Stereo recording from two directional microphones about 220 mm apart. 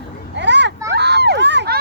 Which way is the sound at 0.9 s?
50° right (ahead or behind).